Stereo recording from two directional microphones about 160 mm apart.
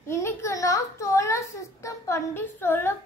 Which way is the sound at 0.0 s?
15° left (ahead or behind).